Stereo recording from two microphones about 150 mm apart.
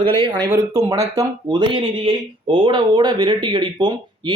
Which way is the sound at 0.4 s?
15° right (ahead or behind).